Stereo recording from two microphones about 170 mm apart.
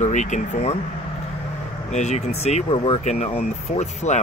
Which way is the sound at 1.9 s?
40° left (ahead or behind).